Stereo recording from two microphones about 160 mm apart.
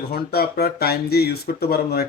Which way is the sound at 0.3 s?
80° left.